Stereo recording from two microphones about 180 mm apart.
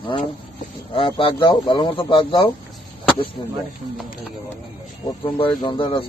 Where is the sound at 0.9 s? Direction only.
30° left (ahead or behind).